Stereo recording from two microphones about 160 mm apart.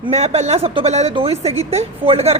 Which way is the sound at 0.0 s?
40° right (ahead or behind).